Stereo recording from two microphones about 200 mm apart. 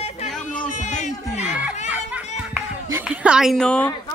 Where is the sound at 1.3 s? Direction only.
5° right (ahead or behind).